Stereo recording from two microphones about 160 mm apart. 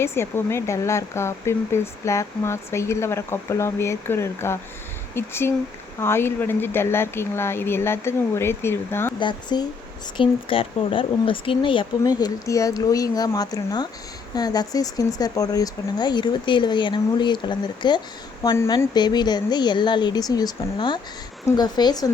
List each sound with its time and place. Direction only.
0.0 s speech: 15° left (ahead or behind)
9.1 s speech: 30° left (ahead or behind)